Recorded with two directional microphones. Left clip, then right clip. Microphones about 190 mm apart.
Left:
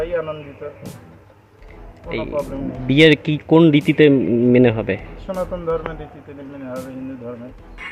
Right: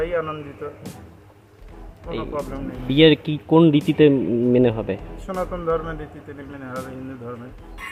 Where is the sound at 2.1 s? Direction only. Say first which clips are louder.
Left 4 dB; centre (ahead or behind).